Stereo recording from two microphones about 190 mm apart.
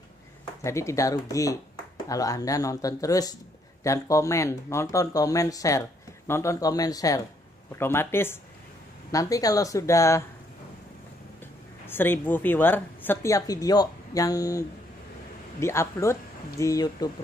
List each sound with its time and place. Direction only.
0.7 s speech: 15° left (ahead or behind)
11.8 s speech: 10° left (ahead or behind)